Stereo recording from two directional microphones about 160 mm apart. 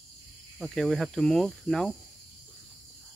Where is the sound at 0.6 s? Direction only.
Centre (ahead or behind).